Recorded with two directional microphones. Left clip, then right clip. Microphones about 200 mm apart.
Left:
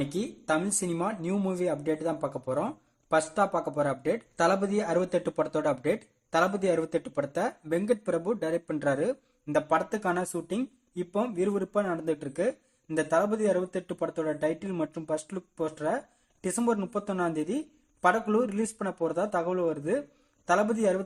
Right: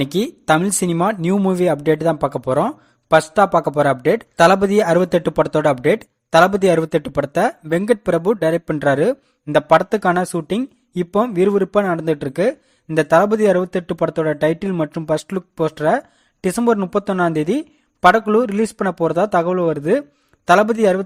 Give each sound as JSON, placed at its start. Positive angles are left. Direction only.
{"t": 0.0, "sound": "speech", "side_deg": -40}